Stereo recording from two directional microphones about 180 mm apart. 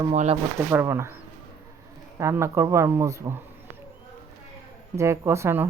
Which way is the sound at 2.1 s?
15° right (ahead or behind).